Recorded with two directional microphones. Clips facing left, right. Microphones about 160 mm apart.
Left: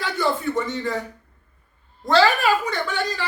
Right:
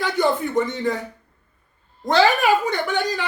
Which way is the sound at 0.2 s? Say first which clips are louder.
Right 3 dB; 20° right (ahead or behind).